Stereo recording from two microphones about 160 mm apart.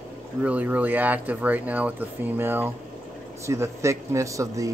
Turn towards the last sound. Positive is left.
turn(degrees=-20)  # may be behind; listen again after turning